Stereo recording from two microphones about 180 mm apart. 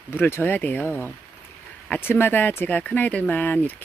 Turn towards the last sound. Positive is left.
turn(degrees=10)  # may be behind; listen again after turning